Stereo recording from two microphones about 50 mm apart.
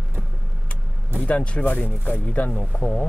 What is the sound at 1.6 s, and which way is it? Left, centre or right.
Speech, left.